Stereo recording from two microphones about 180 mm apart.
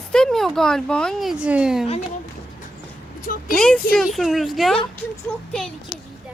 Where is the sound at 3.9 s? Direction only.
Centre (ahead or behind).